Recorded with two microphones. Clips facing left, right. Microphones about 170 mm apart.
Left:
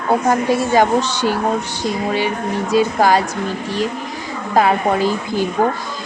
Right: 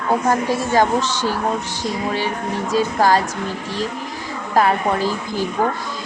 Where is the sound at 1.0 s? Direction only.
65° left (ahead or behind).